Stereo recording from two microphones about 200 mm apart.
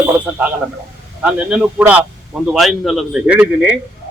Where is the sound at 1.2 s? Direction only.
5° right (ahead or behind).